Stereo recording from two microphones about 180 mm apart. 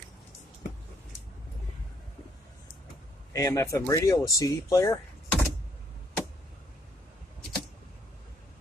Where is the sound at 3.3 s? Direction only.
15° left (ahead or behind).